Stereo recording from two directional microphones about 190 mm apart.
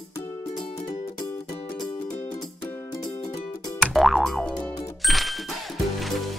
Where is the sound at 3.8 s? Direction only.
Centre (ahead or behind).